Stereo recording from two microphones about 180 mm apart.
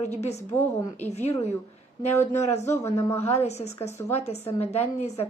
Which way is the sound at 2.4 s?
40° left (ahead or behind).